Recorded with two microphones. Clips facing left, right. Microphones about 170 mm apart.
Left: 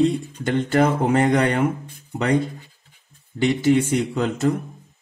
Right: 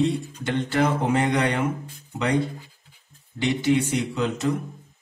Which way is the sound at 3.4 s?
50° left (ahead or behind).